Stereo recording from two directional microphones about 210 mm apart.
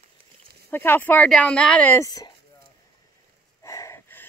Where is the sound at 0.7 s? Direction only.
10° left (ahead or behind).